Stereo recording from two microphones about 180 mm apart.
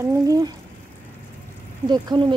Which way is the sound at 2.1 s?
25° right (ahead or behind).